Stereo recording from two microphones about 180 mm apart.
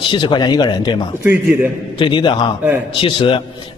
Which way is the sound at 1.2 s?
10° right (ahead or behind).